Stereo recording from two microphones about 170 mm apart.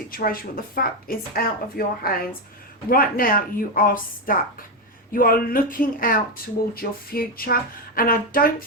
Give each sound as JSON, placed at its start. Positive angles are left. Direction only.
{"t": 0.1, "sound": "speech", "side_deg": 55}